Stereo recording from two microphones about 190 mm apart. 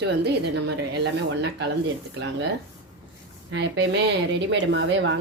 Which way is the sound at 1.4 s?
65° right (ahead or behind).